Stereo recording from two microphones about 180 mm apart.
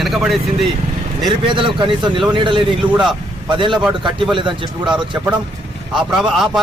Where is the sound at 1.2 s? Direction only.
25° right (ahead or behind).